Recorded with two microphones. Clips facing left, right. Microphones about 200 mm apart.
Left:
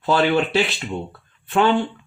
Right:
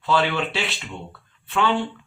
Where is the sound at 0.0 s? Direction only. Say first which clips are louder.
Left 4 dB; 45° left (ahead or behind).